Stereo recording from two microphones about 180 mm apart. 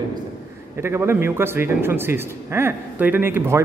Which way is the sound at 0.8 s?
15° right (ahead or behind).